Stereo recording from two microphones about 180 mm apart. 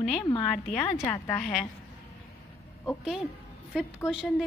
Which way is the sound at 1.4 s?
5° left (ahead or behind).